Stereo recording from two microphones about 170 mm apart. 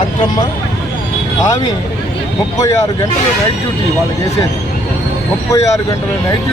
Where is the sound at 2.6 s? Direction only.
20° left (ahead or behind).